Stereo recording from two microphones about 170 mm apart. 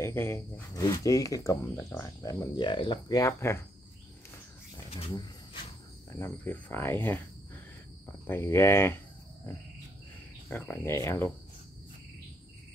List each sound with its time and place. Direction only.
0.0 s speech: 15° left (ahead or behind)
4.9 s a sound: 30° left (ahead or behind)
6.1 s speech: 15° left (ahead or behind)
10.5 s speech: 10° left (ahead or behind)